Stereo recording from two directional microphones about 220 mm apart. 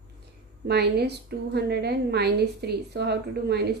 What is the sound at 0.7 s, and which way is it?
A woman's voice, 50° right (ahead or behind).